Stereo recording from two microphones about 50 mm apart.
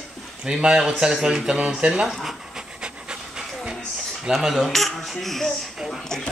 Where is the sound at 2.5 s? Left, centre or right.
Centre.